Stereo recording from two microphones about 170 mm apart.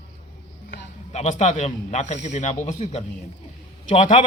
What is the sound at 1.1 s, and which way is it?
A man's voice, 40° left (ahead or behind).